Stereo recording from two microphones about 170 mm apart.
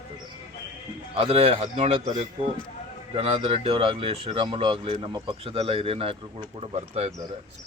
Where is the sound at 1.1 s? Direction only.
40° right (ahead or behind).